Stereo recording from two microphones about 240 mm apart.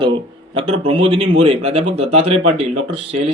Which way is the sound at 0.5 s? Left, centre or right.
Right.